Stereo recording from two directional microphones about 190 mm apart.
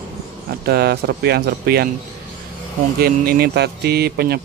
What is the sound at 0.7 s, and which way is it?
Speech, 55° right (ahead or behind).